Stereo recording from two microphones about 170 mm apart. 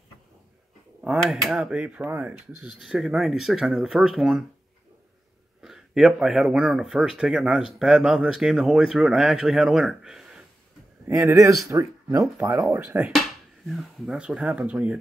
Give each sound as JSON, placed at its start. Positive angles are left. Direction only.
{"t": 1.0, "sound": "speech", "side_deg": -5}
{"t": 5.6, "sound": "speech", "side_deg": 0}
{"t": 11.4, "sound": "speech", "side_deg": -20}
{"t": 13.7, "sound": "speech", "side_deg": 0}